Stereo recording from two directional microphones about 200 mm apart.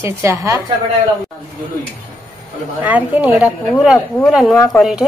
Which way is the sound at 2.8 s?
10° right (ahead or behind).